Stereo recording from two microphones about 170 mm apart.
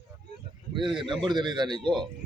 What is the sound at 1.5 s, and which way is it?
Speech, 25° right (ahead or behind).